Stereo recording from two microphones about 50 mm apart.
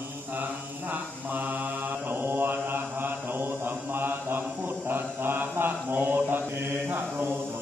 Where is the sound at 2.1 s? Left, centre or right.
Right.